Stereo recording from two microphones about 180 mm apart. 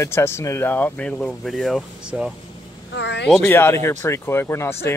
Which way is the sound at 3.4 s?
15° left (ahead or behind).